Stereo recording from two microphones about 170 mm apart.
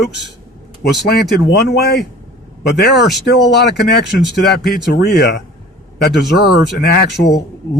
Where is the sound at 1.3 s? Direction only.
80° left.